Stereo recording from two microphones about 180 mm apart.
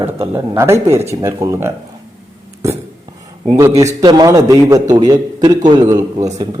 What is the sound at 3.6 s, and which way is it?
Speech, 20° right (ahead or behind).